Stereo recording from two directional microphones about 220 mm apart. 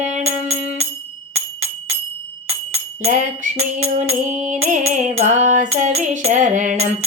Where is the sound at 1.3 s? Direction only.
70° right (ahead or behind).